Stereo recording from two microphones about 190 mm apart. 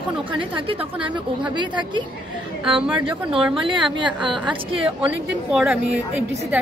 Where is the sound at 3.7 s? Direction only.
25° right (ahead or behind).